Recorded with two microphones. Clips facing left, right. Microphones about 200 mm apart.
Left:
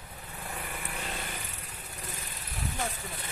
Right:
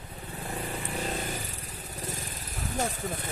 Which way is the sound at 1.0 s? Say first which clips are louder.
Right 7 dB; 40° right (ahead or behind).